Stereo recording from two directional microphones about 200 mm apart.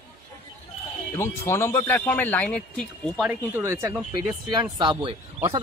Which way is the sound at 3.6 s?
10° right (ahead or behind).